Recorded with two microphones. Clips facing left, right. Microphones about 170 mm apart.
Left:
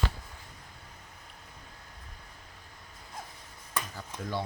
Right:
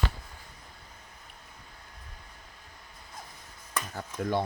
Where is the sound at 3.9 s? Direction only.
55° right (ahead or behind).